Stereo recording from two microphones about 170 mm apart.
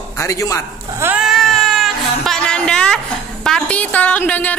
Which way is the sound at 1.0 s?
5° right (ahead or behind).